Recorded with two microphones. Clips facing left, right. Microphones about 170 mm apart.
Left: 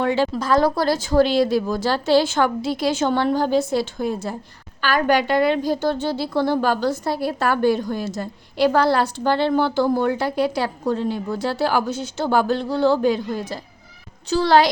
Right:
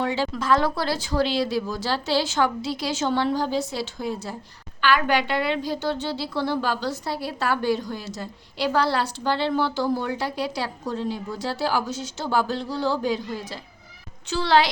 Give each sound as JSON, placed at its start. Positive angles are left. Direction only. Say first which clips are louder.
{"t": 0.0, "sound": "speech", "louder": "left 5 dB", "side_deg": 55}
{"t": 0.3, "sound": "a woman's voice", "louder": "left 4 dB", "side_deg": 40}
{"t": 4.8, "sound": "a woman's voice", "louder": "left 3 dB", "side_deg": 40}